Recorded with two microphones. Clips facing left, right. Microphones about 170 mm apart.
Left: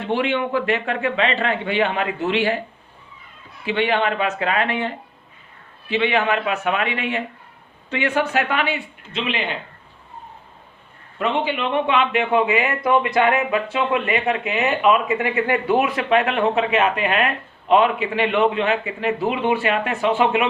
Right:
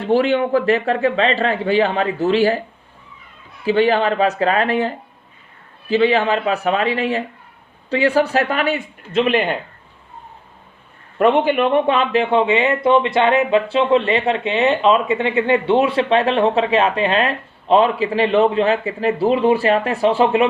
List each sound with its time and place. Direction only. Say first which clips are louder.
0.0 s speech: right 6 dB; 40° right (ahead or behind)
3.7 s speech: right 5 dB; 40° right (ahead or behind)
11.2 s speech: right 8 dB; 50° right (ahead or behind); by 20.5 s 35° right (ahead or behind)